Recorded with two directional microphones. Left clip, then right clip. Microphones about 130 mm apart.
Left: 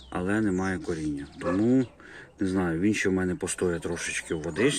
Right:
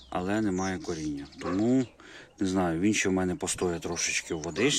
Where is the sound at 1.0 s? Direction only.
35° right (ahead or behind).